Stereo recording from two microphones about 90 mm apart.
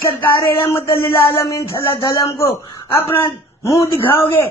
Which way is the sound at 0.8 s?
75° left (ahead or behind).